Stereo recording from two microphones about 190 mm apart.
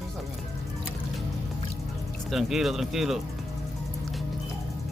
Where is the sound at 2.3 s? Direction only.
Centre (ahead or behind).